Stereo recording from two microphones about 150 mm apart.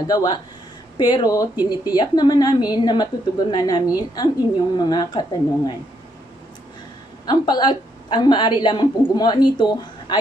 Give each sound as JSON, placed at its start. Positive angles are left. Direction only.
{"t": 0.0, "sound": "a woman's voice", "side_deg": 25}
{"t": 7.2, "sound": "a woman's voice", "side_deg": 30}